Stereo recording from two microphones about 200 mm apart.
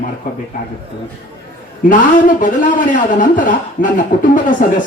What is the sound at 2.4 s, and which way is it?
Speech, 40° left (ahead or behind).